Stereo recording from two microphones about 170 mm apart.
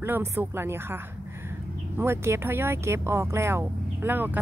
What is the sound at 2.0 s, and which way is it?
Speech, 15° right (ahead or behind).